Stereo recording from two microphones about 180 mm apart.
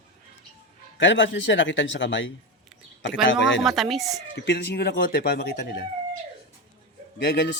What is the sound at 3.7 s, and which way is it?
Speech, centre (ahead or behind).